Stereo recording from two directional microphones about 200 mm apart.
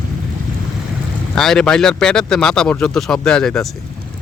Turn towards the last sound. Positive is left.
turn(degrees=5)  # may be behind; listen again after turning